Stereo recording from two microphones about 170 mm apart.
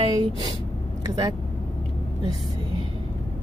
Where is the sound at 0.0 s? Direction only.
25° right (ahead or behind).